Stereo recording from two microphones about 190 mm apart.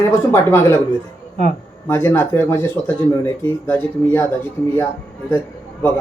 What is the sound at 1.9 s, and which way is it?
Speech, 10° left (ahead or behind).